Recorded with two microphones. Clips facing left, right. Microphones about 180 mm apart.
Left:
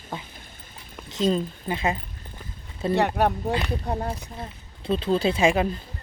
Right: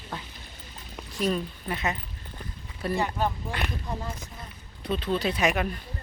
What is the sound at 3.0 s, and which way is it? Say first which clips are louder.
Speech: left 7 dB; 70° left (ahead or behind).